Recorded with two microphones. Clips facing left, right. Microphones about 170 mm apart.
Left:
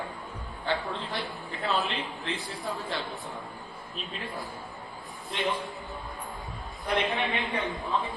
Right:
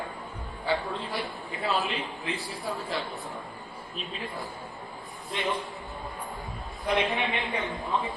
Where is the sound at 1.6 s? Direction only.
Centre (ahead or behind).